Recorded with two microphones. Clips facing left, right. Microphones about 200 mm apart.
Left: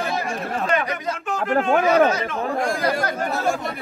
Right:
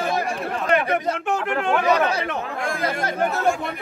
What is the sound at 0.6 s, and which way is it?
Speech, 65° right (ahead or behind).